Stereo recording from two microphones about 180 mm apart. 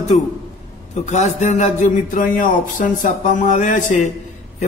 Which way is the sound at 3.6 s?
45° left (ahead or behind).